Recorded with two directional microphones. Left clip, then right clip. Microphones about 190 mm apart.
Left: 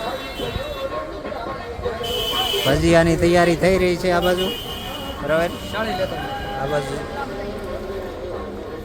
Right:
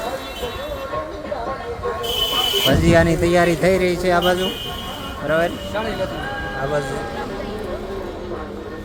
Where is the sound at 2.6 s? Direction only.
5° left (ahead or behind).